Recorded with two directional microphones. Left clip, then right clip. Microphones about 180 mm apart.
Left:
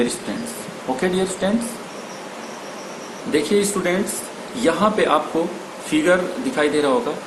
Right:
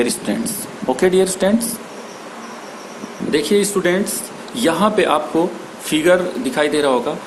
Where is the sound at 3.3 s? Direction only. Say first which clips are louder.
Right 3 dB; 50° right (ahead or behind).